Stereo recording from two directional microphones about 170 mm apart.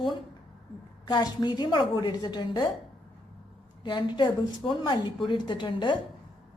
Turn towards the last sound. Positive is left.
turn(degrees=25)  # may be behind; listen again after turning